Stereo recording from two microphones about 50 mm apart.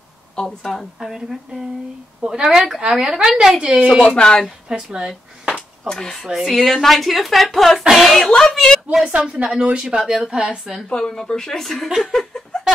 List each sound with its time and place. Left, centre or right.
0.7 s speech: centre
1.0 s a woman's voice: centre
4.0 s speech: centre
4.6 s speech: centre
5.5 s a sound: centre
6.4 s a woman's voice: centre
9.1 s speech: right
9.9 s a woman's voice: centre
10.9 s a woman's voice: centre